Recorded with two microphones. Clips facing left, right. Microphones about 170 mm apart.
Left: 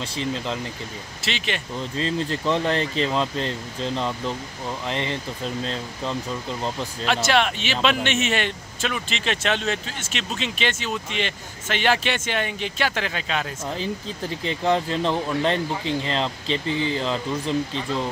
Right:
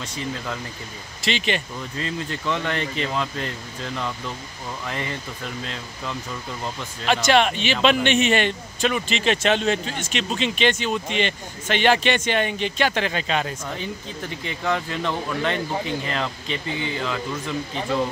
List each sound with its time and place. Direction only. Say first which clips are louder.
0.0 s speech: left 3 dB; 30° left (ahead or behind)
1.2 s a man's voice: right 4 dB; centre (ahead or behind)
1.8 s speech: left 4 dB; 30° left (ahead or behind)
7.1 s a man's voice: right 3 dB; centre (ahead or behind)
14.4 s speech: left 4 dB; 30° left (ahead or behind)